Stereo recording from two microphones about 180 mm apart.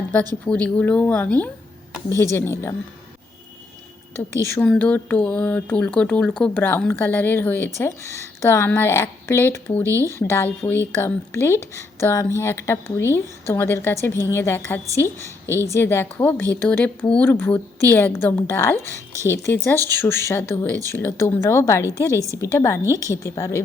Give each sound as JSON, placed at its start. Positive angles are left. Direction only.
{"t": 0.4, "sound": "speech", "side_deg": 5}
{"t": 4.4, "sound": "speech", "side_deg": 15}
{"t": 9.8, "sound": "speech", "side_deg": -15}
{"t": 10.1, "sound": "speech", "side_deg": 15}
{"t": 15.4, "sound": "a woman's voice", "side_deg": -15}
{"t": 15.7, "sound": "speech", "side_deg": 15}